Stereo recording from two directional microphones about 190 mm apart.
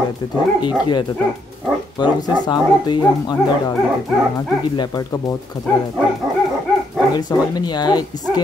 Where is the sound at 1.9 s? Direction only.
20° left (ahead or behind).